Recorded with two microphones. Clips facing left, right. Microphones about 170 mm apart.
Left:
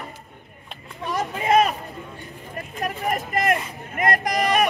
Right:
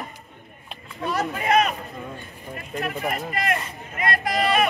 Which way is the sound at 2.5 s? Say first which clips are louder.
Even; 40° left (ahead or behind).